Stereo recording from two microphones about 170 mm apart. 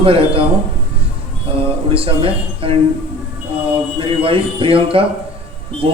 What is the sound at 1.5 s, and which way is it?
Speech, 35° right (ahead or behind).